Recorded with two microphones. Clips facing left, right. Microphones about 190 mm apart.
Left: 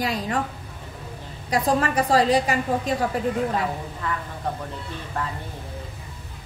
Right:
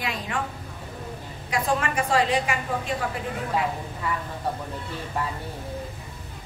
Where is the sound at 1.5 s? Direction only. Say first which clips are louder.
Left 4 dB; 35° left (ahead or behind).